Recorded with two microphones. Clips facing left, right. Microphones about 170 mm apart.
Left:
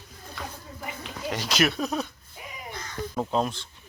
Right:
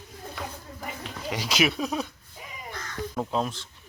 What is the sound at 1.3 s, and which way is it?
Speech, 10° right (ahead or behind).